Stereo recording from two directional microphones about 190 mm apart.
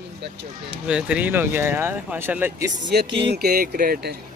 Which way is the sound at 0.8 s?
5° right (ahead or behind).